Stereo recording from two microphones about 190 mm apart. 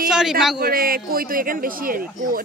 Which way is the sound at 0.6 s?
50° right (ahead or behind).